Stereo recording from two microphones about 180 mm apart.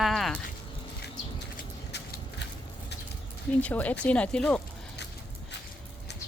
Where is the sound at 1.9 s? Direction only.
70° left (ahead or behind).